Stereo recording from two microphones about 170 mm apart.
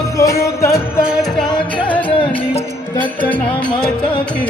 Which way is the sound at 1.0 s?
Centre (ahead or behind).